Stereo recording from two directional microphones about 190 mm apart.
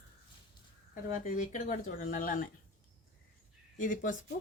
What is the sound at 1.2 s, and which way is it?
Speech, 40° left (ahead or behind).